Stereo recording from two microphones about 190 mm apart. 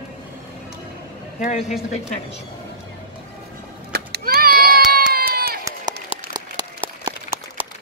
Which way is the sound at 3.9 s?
55° right (ahead or behind).